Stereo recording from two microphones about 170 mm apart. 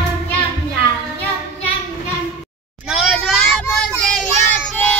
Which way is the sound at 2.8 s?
Centre (ahead or behind).